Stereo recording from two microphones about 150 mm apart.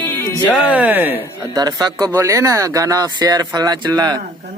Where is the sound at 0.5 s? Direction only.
5° right (ahead or behind).